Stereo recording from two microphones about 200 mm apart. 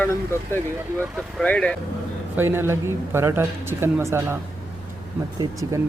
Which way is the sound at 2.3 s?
10° right (ahead or behind).